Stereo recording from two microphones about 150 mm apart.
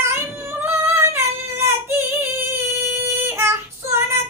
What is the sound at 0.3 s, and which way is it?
Singing, 20° right (ahead or behind).